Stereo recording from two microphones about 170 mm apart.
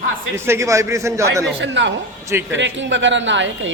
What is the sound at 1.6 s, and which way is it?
Speech, 90° right.